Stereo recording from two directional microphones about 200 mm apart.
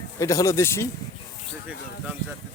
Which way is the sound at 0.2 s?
15° left (ahead or behind).